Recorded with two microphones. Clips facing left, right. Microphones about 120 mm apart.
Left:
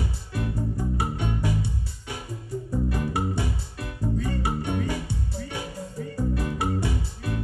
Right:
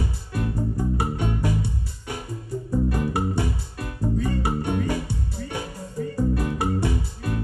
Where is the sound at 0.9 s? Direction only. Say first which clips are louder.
Right 2 dB; 45° right (ahead or behind).